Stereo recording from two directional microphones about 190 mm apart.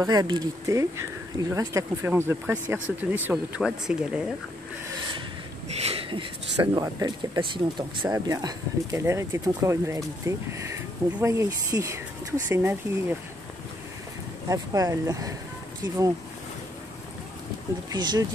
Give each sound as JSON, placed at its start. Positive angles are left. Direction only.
{"t": 0.0, "sound": "speech", "side_deg": -20}
{"t": 5.8, "sound": "speech", "side_deg": -30}
{"t": 14.5, "sound": "speech", "side_deg": -15}
{"t": 17.8, "sound": "speech", "side_deg": -20}